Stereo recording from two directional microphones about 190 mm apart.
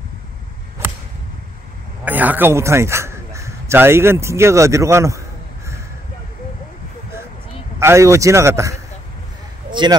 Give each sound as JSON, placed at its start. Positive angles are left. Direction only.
{"t": 2.0, "sound": "a man's voice", "side_deg": -10}
{"t": 7.8, "sound": "a man's voice", "side_deg": -15}
{"t": 9.7, "sound": "a sound", "side_deg": -25}